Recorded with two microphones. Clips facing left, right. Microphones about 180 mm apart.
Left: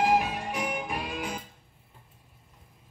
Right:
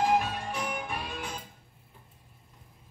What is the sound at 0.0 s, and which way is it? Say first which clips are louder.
Music: left 2 dB; 10° left (ahead or behind).